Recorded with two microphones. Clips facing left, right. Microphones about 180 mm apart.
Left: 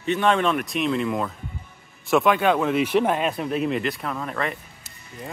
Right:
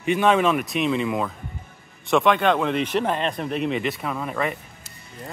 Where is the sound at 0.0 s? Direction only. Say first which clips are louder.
Right 2 dB; 10° right (ahead or behind).